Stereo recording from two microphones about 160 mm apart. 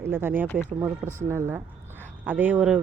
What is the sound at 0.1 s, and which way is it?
Speech, 15° right (ahead or behind).